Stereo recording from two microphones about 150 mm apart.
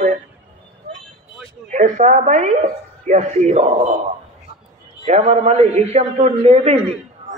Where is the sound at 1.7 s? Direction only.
55° right (ahead or behind).